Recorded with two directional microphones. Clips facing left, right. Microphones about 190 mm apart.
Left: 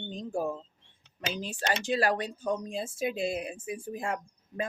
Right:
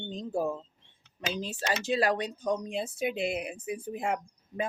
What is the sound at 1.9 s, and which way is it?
Speech, 20° right (ahead or behind).